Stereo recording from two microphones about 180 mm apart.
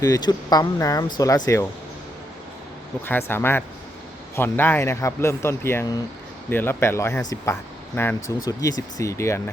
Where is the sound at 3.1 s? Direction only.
10° left (ahead or behind).